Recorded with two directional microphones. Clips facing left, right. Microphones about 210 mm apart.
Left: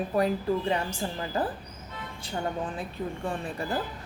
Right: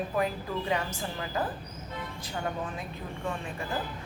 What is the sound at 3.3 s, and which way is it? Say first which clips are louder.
Speech: even; 35° left (ahead or behind).